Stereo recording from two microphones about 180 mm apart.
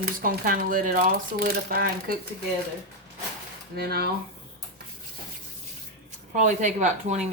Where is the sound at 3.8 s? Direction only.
60° right (ahead or behind).